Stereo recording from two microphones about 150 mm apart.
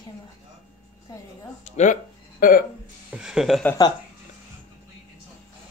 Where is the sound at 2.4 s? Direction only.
65° left (ahead or behind).